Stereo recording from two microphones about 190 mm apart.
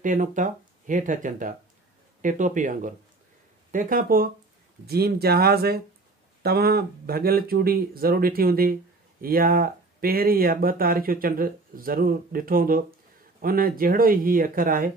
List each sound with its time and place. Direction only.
0.0 s speech: 40° right (ahead or behind)